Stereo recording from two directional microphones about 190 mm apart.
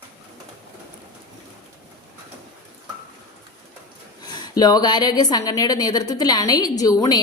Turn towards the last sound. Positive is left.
turn(degrees=20)  # may be behind; listen again after turning